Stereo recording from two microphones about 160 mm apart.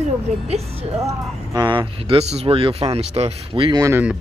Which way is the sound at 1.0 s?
20° right (ahead or behind).